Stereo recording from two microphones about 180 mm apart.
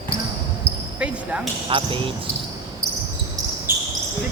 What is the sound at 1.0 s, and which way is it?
Speech, 5° right (ahead or behind).